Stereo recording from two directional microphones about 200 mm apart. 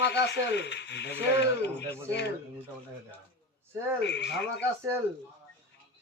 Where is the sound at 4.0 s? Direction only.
60° left (ahead or behind).